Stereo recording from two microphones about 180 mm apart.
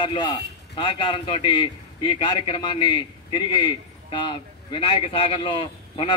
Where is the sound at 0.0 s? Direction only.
25° left (ahead or behind).